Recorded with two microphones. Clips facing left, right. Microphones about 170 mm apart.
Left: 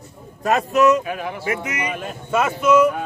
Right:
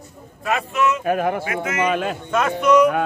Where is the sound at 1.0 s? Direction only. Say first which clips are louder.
Right 6 dB; 50° right (ahead or behind).